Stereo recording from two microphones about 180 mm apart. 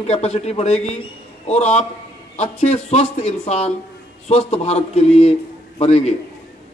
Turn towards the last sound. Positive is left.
turn(degrees=35)  # may be behind; listen again after turning